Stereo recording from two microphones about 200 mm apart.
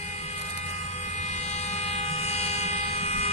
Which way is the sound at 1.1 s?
35° left (ahead or behind).